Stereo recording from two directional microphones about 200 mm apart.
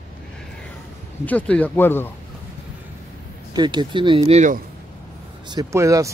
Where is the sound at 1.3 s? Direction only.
5° left (ahead or behind).